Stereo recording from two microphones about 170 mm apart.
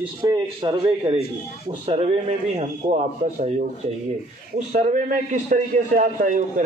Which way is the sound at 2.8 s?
45° right (ahead or behind).